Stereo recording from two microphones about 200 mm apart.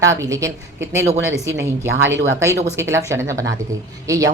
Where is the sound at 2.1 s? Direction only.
65° right (ahead or behind).